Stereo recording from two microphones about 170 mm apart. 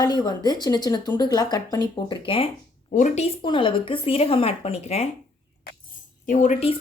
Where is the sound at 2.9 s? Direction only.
50° left (ahead or behind).